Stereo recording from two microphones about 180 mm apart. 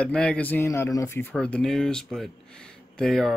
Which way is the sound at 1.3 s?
5° left (ahead or behind).